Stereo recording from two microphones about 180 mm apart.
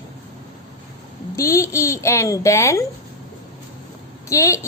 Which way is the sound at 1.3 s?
15° left (ahead or behind).